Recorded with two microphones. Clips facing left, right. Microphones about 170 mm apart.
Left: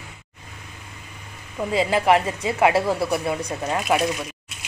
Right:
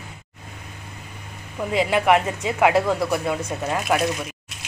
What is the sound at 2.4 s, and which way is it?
Speech, centre (ahead or behind).